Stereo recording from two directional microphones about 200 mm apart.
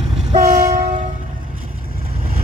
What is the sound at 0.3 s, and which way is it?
Train, 35° right (ahead or behind).